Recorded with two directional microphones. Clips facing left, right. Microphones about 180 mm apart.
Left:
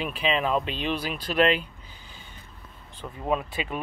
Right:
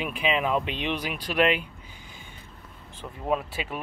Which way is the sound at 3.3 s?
5° right (ahead or behind).